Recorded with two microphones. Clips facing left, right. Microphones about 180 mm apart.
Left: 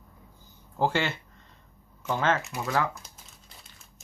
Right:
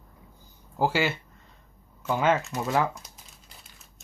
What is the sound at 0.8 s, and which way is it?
Speech, 5° right (ahead or behind).